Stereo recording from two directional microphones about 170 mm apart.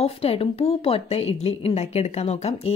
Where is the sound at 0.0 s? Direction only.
35° left (ahead or behind).